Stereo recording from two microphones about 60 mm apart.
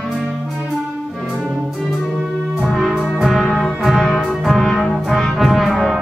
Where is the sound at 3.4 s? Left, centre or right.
Centre.